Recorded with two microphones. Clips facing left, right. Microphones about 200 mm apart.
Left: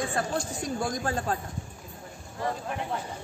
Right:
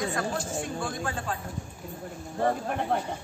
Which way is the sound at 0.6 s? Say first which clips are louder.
Left 2 dB; 40° left (ahead or behind).